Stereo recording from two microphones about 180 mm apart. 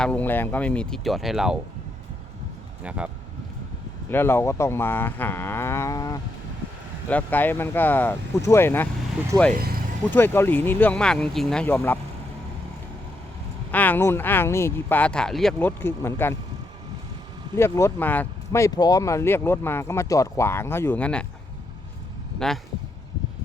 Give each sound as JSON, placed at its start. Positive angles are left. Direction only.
{"t": 0.0, "sound": "speech", "side_deg": 10}
{"t": 2.8, "sound": "speech", "side_deg": -5}
{"t": 4.1, "sound": "speech", "side_deg": 15}
{"t": 9.5, "sound": "speech", "side_deg": -55}
{"t": 10.2, "sound": "speech", "side_deg": 10}
{"t": 13.7, "sound": "speech", "side_deg": 10}
{"t": 15.5, "sound": "speech", "side_deg": 10}
{"t": 17.6, "sound": "speech", "side_deg": 15}
{"t": 22.4, "sound": "speech", "side_deg": 0}